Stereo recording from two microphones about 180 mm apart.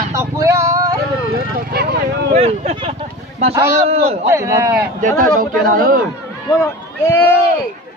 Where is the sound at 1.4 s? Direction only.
60° right (ahead or behind).